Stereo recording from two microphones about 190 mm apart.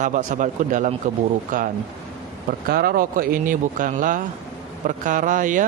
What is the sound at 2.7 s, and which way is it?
Speech, 55° right (ahead or behind).